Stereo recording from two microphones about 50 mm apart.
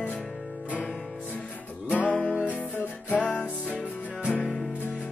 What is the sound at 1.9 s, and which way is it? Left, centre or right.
Music, left.